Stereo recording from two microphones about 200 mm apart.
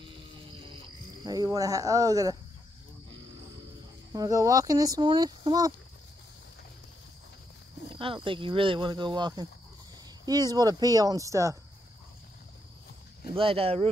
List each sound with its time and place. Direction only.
0.0 s frog: 25° right (ahead or behind)
1.2 s speech: 20° right (ahead or behind)
4.1 s speech: 15° right (ahead or behind)
7.9 s speech: 25° right (ahead or behind)
13.3 s speech: 25° right (ahead or behind)